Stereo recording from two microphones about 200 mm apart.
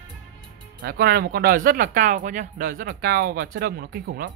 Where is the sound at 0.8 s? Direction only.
50° right (ahead or behind).